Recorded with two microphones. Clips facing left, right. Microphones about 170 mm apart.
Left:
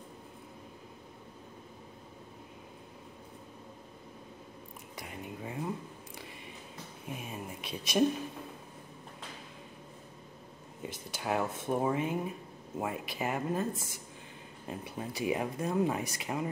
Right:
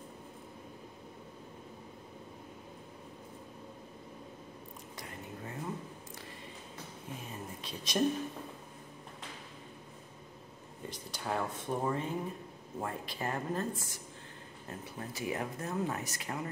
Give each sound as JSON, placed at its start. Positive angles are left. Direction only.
{"t": 4.9, "sound": "whispering", "side_deg": 10}
{"t": 7.1, "sound": "a sound", "side_deg": 15}
{"t": 10.8, "sound": "speech", "side_deg": 5}
{"t": 14.7, "sound": "speech", "side_deg": 15}